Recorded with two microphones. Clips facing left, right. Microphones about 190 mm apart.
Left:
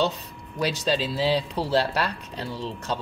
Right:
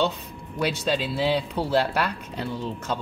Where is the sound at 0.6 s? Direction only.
Centre (ahead or behind).